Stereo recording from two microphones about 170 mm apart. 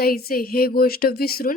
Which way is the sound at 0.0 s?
60° left (ahead or behind).